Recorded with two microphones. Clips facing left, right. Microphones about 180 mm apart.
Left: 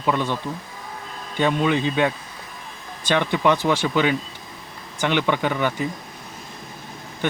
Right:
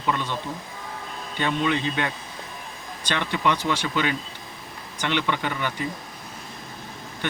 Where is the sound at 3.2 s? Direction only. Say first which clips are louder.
Left 5 dB; 15° left (ahead or behind).